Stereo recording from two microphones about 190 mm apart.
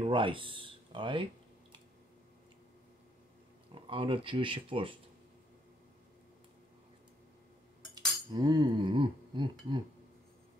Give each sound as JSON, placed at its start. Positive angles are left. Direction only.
{"t": 0.0, "sound": "speech", "side_deg": -25}
{"t": 3.7, "sound": "speech", "side_deg": -25}
{"t": 8.3, "sound": "speech", "side_deg": -20}